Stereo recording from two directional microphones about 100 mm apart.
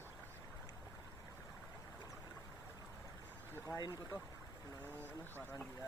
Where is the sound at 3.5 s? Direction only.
30° left (ahead or behind).